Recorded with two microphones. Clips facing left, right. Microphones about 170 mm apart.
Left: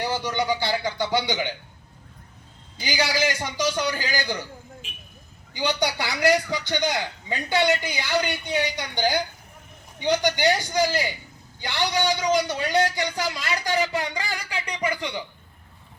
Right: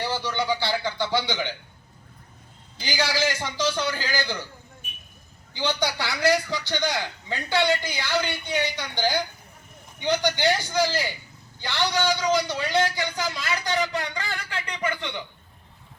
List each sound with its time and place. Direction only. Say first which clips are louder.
0.0 s a man's voice: left 2 dB; 20° left (ahead or behind)
2.8 s a man's voice: left 1 dB; 20° left (ahead or behind)
5.5 s a man's voice: left 1 dB; 20° left (ahead or behind)
13.2 s a man's voice: left 1 dB; 5° left (ahead or behind)
13.9 s a man's voice: left 2 dB; 20° left (ahead or behind)